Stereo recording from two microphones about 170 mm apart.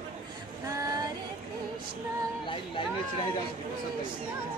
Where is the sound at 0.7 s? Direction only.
20° right (ahead or behind).